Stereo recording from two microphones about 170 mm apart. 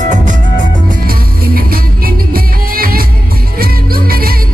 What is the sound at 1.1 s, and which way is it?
Music, 60° right (ahead or behind).